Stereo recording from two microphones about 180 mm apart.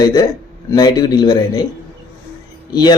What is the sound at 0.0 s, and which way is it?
Speech, 20° left (ahead or behind).